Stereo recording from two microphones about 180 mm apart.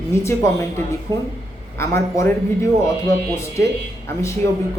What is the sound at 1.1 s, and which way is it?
Speech, 25° right (ahead or behind).